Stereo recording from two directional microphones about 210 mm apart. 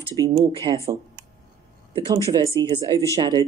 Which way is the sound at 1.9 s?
20° right (ahead or behind).